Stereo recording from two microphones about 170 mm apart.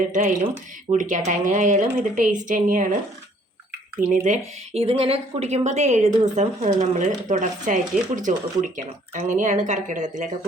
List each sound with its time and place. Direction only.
0.1 s speech: 50° right (ahead or behind)
4.1 s speech: 40° right (ahead or behind)